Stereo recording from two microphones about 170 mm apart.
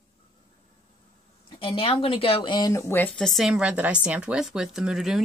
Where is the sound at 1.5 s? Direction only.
30° left (ahead or behind).